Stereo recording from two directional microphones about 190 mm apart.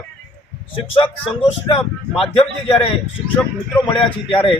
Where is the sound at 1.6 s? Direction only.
30° left (ahead or behind).